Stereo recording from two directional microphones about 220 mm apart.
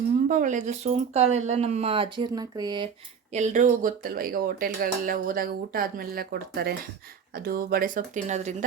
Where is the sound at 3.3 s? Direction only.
30° right (ahead or behind).